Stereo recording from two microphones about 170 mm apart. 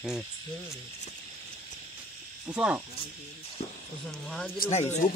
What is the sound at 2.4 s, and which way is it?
Frog, 10° right (ahead or behind).